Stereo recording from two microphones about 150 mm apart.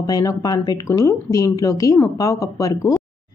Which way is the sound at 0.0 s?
25° left (ahead or behind).